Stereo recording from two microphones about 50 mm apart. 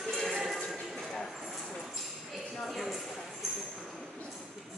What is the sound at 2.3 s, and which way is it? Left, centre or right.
Tambourine, centre.